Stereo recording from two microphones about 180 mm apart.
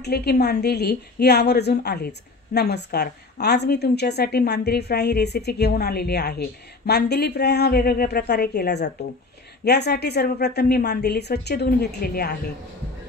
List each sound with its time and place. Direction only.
0.0 s a woman's voice: 60° left (ahead or behind)